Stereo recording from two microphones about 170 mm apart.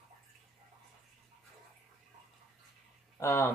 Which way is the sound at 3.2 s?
15° left (ahead or behind).